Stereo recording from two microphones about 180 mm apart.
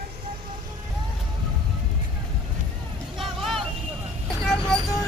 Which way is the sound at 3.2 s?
Centre (ahead or behind).